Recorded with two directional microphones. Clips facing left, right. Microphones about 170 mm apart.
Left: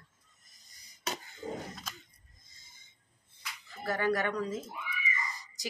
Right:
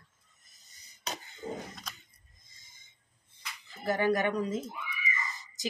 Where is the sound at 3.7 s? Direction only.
20° right (ahead or behind).